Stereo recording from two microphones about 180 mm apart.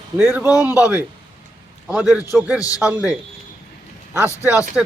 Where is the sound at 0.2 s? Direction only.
5° right (ahead or behind).